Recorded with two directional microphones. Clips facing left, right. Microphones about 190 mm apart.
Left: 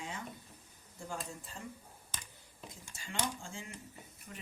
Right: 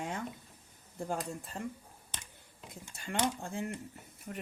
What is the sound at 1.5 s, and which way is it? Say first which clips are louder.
Speech: right 8 dB; 60° right (ahead or behind).